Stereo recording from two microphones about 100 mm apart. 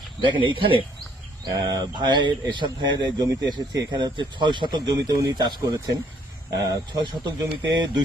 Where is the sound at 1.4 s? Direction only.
40° right (ahead or behind).